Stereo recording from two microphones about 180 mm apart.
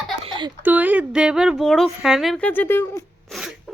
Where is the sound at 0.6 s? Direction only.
10° right (ahead or behind); by 3.0 s 10° left (ahead or behind).